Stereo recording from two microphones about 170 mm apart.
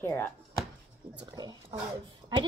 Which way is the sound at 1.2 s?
25° right (ahead or behind).